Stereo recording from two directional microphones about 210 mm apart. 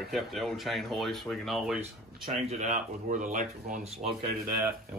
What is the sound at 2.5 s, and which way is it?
Speech, 35° right (ahead or behind).